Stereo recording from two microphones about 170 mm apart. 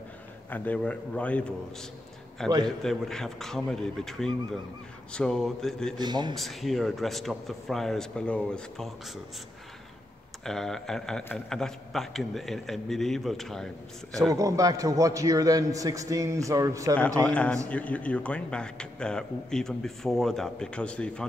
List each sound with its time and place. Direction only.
0.5 s a man's voice: 10° left (ahead or behind)
5.9 s a man's voice: 25° right (ahead or behind)
6.3 s a man's voice: centre (ahead or behind)
10.4 s a man's voice: 5° left (ahead or behind)
14.3 s a man's voice: 20° right (ahead or behind)
17.2 s a man's voice: 5° left (ahead or behind)